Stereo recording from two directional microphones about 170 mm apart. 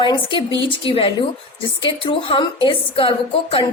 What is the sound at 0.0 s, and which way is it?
A woman's voice, 30° left (ahead or behind).